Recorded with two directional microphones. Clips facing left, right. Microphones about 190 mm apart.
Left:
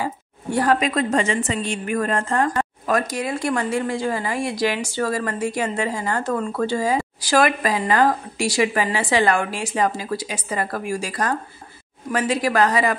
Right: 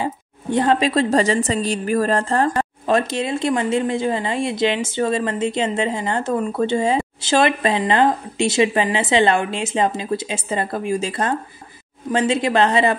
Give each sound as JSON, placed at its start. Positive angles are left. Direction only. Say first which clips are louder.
{"t": 0.0, "sound": "a woman's voice", "louder": "right 2 dB", "side_deg": -20}